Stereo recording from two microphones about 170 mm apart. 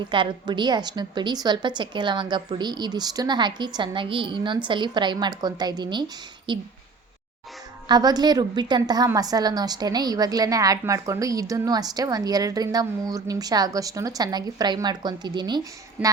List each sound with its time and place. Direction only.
0.1 s a woman's voice: 30° right (ahead or behind)
7.9 s a woman's voice: 25° right (ahead or behind)